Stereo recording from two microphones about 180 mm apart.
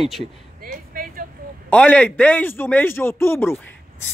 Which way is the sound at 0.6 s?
55° right (ahead or behind).